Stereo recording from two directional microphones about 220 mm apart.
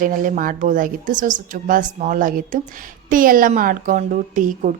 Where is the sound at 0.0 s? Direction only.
40° right (ahead or behind).